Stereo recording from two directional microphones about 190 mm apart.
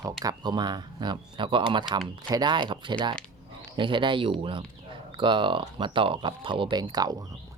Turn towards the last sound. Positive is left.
turn(degrees=-20)  # may be behind; listen again after turning